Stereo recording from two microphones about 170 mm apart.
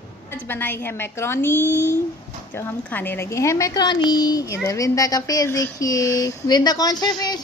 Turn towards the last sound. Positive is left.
turn(degrees=25)  # may be behind; listen again after turning